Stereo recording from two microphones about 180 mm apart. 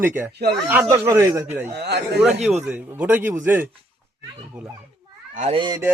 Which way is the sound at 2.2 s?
5° right (ahead or behind).